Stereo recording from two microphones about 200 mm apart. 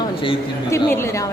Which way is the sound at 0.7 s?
15° left (ahead or behind).